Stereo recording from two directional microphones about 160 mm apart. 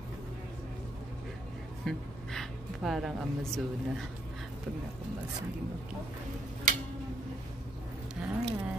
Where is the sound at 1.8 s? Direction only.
Centre (ahead or behind).